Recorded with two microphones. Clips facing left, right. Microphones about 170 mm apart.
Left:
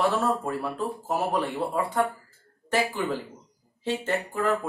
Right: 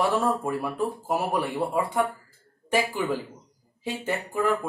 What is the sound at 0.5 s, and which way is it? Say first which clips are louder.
Speech: right 2 dB; 15° right (ahead or behind).